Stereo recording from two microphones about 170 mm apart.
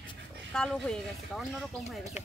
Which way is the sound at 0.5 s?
5° left (ahead or behind).